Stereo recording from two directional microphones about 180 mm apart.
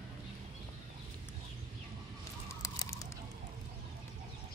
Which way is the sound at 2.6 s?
20° left (ahead or behind).